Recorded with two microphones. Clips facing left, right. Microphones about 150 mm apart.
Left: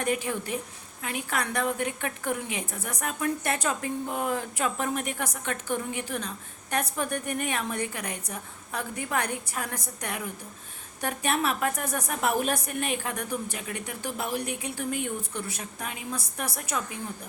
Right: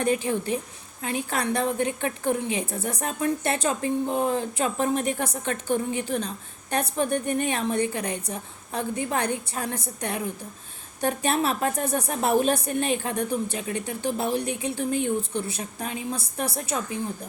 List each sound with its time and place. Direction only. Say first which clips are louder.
0.0 s a woman's voice: right 4 dB; 30° right (ahead or behind)